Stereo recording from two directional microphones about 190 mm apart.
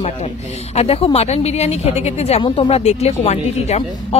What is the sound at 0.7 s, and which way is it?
Speech, 30° left (ahead or behind).